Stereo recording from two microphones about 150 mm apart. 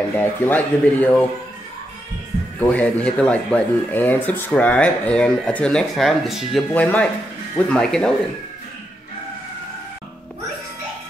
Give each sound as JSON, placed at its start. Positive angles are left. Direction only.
{"t": 0.1, "sound": "speech", "side_deg": 10}
{"t": 2.6, "sound": "speech", "side_deg": 10}
{"t": 6.7, "sound": "speech", "side_deg": 10}